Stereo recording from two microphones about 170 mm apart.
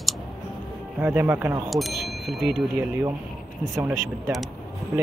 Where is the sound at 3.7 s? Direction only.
15° right (ahead or behind).